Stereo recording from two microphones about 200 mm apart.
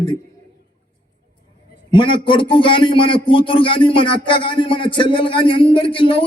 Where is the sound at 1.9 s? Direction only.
25° left (ahead or behind).